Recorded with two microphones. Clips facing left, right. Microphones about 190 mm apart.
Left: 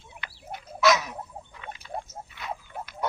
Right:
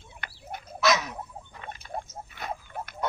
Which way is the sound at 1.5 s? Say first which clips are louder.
Even; 50° right (ahead or behind).